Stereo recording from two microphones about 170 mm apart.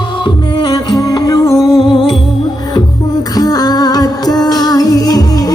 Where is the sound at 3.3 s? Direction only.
25° left (ahead or behind).